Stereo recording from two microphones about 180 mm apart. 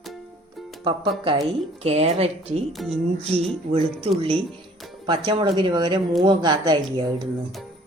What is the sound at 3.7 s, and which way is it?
A woman's voice, 30° right (ahead or behind).